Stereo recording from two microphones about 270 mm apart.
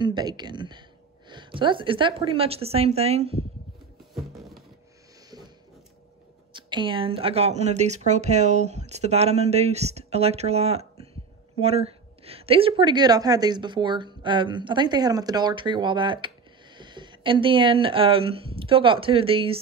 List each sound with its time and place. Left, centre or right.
0.0 s a woman's voice: centre
6.5 s a woman's voice: centre